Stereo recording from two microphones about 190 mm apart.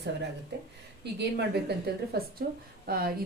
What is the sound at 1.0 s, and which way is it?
A woman's voice, 60° right (ahead or behind).